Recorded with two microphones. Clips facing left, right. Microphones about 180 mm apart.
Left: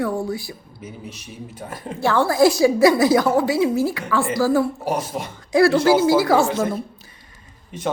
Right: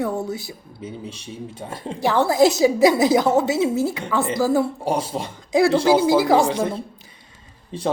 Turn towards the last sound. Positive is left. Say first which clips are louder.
# right 3 dB
turn(degrees=-30)  # may be behind; listen again after turning